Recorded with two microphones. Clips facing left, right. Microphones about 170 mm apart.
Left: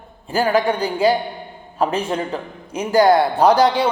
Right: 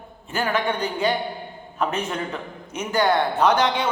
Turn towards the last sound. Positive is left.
turn(degrees=35)  # may be behind; listen again after turning